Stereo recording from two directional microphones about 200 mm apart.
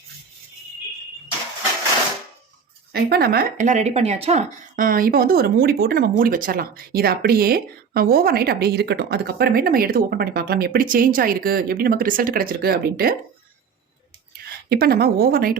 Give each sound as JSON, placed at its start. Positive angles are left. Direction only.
{"t": 2.9, "sound": "speech", "side_deg": -50}
{"t": 14.7, "sound": "speech", "side_deg": -50}